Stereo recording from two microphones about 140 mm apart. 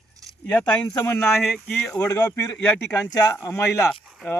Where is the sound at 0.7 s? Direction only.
30° left (ahead or behind).